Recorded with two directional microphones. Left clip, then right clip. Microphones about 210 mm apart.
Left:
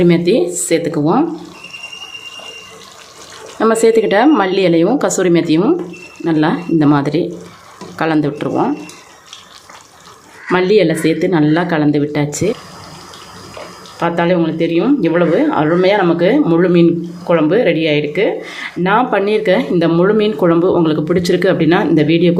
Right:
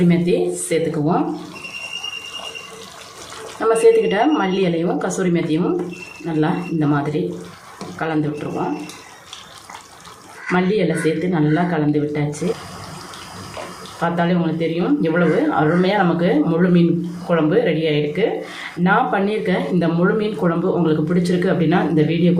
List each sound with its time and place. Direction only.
0.1 s speech: 55° left (ahead or behind)
3.6 s speech: 50° left (ahead or behind)
10.5 s speech: 50° left (ahead or behind)
14.0 s speech: 45° left (ahead or behind)